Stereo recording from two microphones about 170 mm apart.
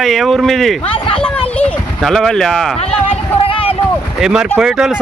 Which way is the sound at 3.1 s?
35° left (ahead or behind).